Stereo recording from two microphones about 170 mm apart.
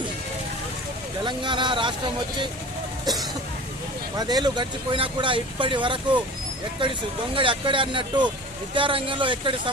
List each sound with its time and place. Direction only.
1.2 s speech: 30° right (ahead or behind)
4.2 s speech: 25° right (ahead or behind)